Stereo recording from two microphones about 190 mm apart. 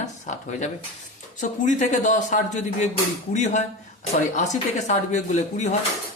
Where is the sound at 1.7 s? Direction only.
40° left (ahead or behind).